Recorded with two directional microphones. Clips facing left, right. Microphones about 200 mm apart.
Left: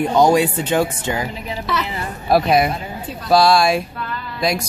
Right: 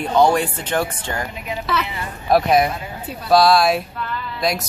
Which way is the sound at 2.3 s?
5° left (ahead or behind).